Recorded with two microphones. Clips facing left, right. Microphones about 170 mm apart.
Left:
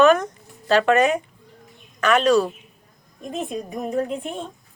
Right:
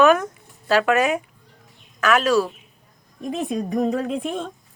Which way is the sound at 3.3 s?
90° right.